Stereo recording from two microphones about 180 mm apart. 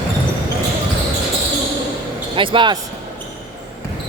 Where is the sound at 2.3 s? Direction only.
30° right (ahead or behind).